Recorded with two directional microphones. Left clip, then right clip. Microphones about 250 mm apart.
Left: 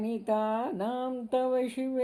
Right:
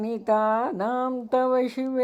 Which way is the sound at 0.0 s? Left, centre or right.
Right.